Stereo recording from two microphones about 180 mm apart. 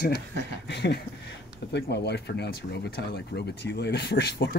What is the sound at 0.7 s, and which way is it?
Speech, 70° left (ahead or behind).